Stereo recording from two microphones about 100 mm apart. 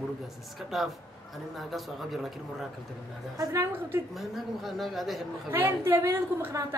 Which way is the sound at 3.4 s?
30° right (ahead or behind).